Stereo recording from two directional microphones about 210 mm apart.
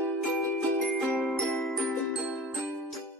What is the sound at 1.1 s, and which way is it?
Music, centre (ahead or behind).